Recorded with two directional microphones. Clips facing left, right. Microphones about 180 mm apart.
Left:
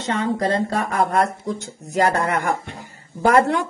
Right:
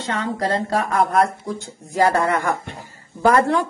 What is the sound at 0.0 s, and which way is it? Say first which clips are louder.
Speech: left 2 dB; 25° left (ahead or behind).